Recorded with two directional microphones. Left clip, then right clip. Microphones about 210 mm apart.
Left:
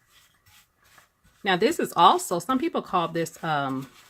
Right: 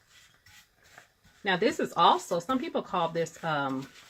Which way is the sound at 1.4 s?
40° left (ahead or behind).